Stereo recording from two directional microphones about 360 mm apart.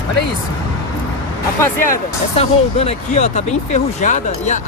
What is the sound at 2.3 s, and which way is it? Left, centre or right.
Speech, centre.